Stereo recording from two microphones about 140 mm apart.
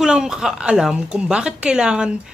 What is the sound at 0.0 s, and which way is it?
Speech, 5° right (ahead or behind).